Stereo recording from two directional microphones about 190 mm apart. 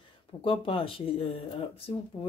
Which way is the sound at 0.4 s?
30° left (ahead or behind).